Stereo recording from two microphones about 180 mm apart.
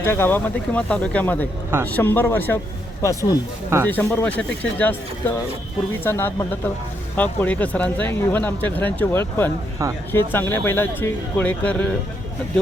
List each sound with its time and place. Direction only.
0.0 s speech: 10° left (ahead or behind)